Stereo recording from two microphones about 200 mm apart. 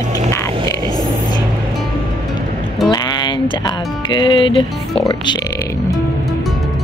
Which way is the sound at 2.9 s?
20° left (ahead or behind).